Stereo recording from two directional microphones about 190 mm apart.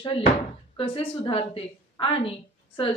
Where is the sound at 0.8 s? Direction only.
30° left (ahead or behind).